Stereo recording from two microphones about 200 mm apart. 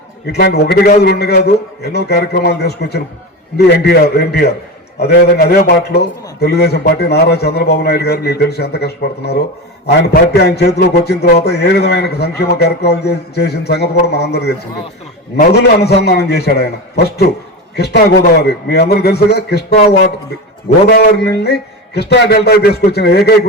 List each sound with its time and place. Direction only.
0.3 s a man's voice: 55° left (ahead or behind)
20.9 s a man's voice: 55° left (ahead or behind)